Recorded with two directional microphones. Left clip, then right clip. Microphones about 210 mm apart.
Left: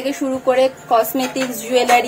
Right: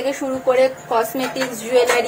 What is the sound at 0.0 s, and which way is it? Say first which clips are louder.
Speech: left 1 dB; 50° left (ahead or behind).